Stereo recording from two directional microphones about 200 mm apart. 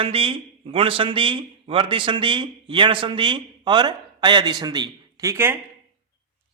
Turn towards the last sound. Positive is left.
turn(degrees=-10)  # may be behind; listen again after turning